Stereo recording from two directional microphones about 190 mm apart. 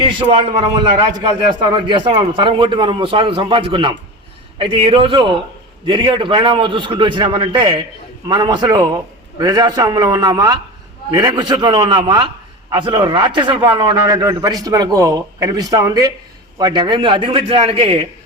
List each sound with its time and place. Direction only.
0.0 s a man's voice: 25° right (ahead or behind)